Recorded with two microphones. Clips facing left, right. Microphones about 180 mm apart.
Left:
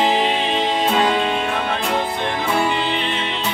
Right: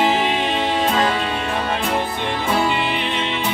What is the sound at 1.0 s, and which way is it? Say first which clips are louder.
Music: left 2 dB; 15° left (ahead or behind).